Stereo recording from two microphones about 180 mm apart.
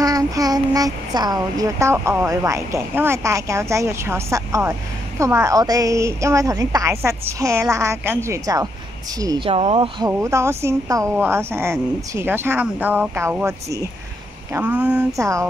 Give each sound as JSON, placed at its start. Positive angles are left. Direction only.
{"t": 0.0, "sound": "speech", "side_deg": -20}
{"t": 9.5, "sound": "speech", "side_deg": -35}